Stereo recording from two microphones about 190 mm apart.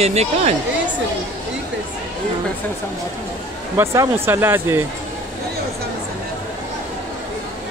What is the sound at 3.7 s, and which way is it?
Speech, 15° right (ahead or behind).